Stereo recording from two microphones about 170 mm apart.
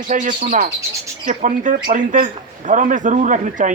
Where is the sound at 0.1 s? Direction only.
50° right (ahead or behind).